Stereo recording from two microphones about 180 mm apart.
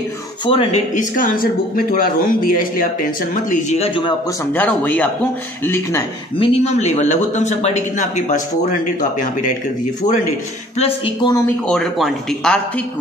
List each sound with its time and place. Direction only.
0.5 s speech: 35° left (ahead or behind); by 3.8 s 50° left (ahead or behind)
3.8 s speech: 30° left (ahead or behind)
4.6 s speech: 10° left (ahead or behind)
6.3 s speech: 30° left (ahead or behind)
10.8 s speech: 25° left (ahead or behind)
11.4 s speech: 5° left (ahead or behind)